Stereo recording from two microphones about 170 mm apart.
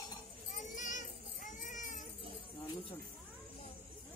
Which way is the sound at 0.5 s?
50° left (ahead or behind).